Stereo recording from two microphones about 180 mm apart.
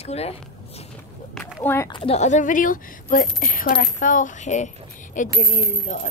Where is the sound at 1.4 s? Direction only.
15° left (ahead or behind).